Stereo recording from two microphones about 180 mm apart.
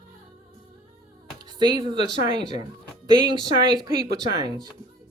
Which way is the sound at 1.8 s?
25° right (ahead or behind).